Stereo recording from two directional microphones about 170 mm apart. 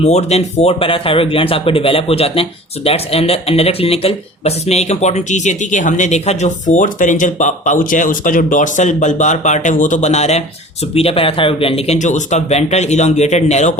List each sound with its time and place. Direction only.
0.0 s speech: 40° left (ahead or behind)